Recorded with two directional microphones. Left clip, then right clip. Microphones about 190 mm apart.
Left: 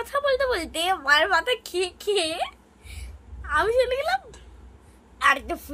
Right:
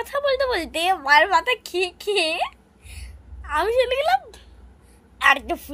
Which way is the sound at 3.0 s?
25° right (ahead or behind).